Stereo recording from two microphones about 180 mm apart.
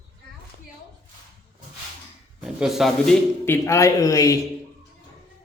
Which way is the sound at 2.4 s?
Centre (ahead or behind).